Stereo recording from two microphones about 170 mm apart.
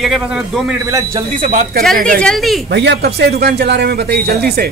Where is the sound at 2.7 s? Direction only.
85° right; by 4.7 s 65° right (ahead or behind).